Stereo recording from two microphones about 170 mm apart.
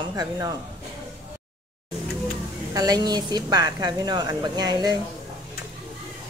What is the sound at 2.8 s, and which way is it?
A woman's voice, 20° right (ahead or behind).